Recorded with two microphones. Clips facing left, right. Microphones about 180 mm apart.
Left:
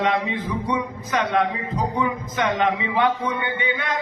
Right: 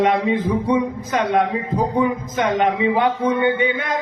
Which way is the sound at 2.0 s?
45° right (ahead or behind).